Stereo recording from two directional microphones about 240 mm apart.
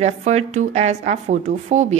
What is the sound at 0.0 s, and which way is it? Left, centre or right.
A woman's voice, right.